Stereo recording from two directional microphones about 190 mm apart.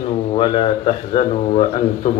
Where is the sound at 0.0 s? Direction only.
30° left (ahead or behind).